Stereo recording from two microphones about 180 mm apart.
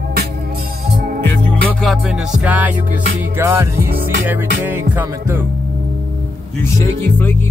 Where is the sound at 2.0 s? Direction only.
5° right (ahead or behind).